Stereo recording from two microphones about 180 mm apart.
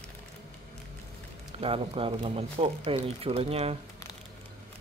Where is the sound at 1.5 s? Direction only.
30° right (ahead or behind).